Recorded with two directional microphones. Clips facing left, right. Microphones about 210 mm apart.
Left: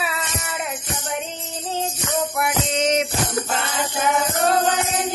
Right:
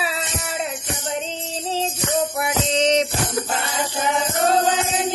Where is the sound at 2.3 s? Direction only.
30° right (ahead or behind).